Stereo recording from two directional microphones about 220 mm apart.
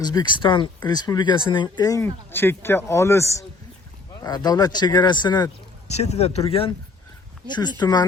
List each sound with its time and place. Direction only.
0.0 s a man's voice: 20° left (ahead or behind)
5.9 s speech: 30° left (ahead or behind)